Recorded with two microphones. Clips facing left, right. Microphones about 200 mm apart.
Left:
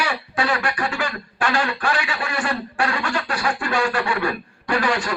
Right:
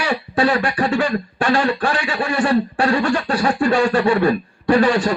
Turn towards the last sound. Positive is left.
turn(degrees=-30)  # may be behind; listen again after turning